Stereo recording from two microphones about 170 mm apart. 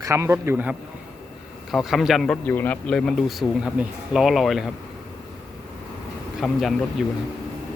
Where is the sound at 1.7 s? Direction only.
Centre (ahead or behind).